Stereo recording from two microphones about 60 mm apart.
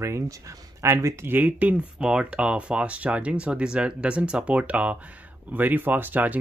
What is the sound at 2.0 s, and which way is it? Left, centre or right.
Speech, centre.